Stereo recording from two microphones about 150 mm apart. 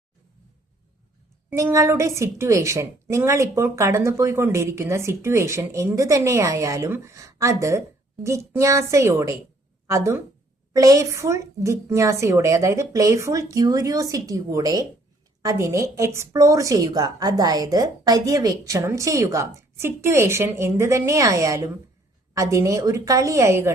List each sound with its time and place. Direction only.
1.5 s a woman's voice: 15° right (ahead or behind)